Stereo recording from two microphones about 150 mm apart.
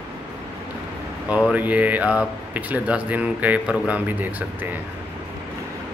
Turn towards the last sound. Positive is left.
turn(degrees=-10)  # may be behind; listen again after turning